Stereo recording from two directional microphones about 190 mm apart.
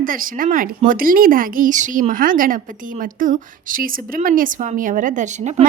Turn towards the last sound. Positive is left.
turn(degrees=-40)  # may be behind; listen again after turning